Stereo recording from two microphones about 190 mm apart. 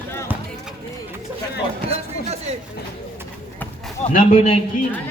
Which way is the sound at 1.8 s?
35° right (ahead or behind).